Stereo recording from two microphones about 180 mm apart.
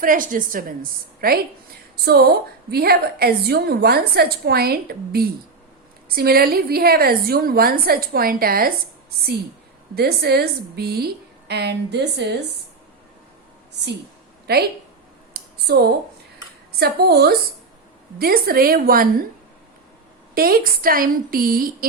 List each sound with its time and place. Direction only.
0.0 s a woman's voice: 50° right (ahead or behind); by 12.4 s 70° right (ahead or behind)
14.5 s a woman's voice: 65° right (ahead or behind)
15.3 s a sound: 60° right (ahead or behind)
16.8 s a woman's voice: 65° right (ahead or behind)
20.3 s a woman's voice: 55° right (ahead or behind)